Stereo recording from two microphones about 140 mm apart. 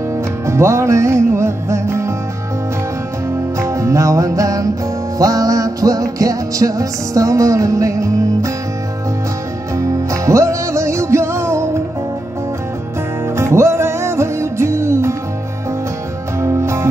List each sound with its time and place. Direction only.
0.5 s music: 20° right (ahead or behind)
3.5 s music: 20° right (ahead or behind)
9.8 s music: 20° right (ahead or behind)
13.4 s music: 20° right (ahead or behind)
16.3 s music: 20° right (ahead or behind)